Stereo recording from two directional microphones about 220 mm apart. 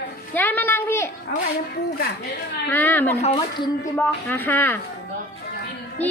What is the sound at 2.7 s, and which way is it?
Speech, 10° left (ahead or behind).